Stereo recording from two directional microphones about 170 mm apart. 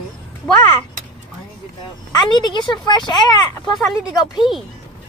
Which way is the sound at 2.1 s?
25° left (ahead or behind).